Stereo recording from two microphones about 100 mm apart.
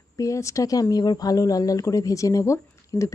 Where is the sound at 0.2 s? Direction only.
30° left (ahead or behind).